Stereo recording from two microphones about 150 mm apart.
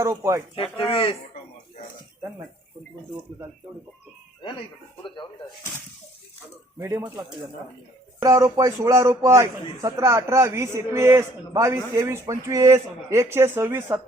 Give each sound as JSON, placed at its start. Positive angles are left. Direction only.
{"t": 0.0, "sound": "speech", "side_deg": -20}
{"t": 0.5, "sound": "speech", "side_deg": 40}
{"t": 5.0, "sound": "speech", "side_deg": 35}
{"t": 6.7, "sound": "speech", "side_deg": -20}
{"t": 8.2, "sound": "a man's voice", "side_deg": -20}